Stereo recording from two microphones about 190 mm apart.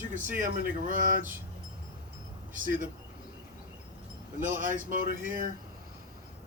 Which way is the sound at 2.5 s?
45° right (ahead or behind).